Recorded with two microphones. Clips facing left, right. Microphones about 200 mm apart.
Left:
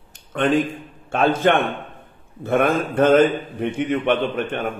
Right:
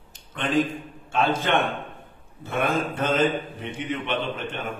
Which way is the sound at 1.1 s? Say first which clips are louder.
Left 5 dB; 50° left (ahead or behind).